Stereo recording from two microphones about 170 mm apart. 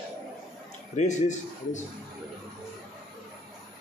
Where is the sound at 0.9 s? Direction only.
45° left (ahead or behind).